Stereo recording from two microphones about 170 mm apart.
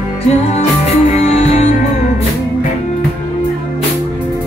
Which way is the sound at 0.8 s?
45° left (ahead or behind).